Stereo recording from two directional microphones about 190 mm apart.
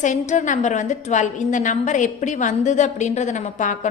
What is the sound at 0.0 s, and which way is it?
A woman's voice, 40° left (ahead or behind).